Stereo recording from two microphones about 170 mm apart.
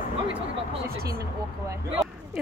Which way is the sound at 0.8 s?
65° right (ahead or behind).